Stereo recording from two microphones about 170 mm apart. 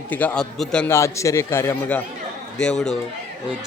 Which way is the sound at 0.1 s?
10° left (ahead or behind).